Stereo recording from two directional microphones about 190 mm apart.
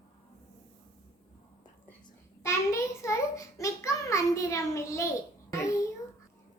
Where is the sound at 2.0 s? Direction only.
15° left (ahead or behind).